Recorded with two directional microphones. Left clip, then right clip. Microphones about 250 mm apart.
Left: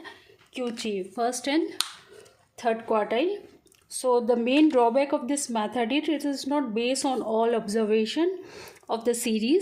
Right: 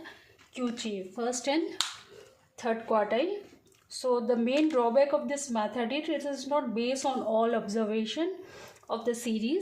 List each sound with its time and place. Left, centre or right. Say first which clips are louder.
0.5 s a woman's voice: left 4 dB; left